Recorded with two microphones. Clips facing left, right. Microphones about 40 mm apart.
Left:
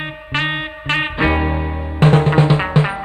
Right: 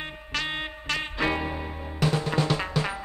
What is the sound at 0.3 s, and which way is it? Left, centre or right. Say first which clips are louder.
Music: left 10 dB; left.